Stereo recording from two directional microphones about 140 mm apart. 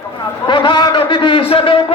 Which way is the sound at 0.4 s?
35° left (ahead or behind).